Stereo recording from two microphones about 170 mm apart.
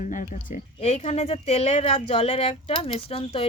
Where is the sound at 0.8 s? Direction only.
40° left (ahead or behind).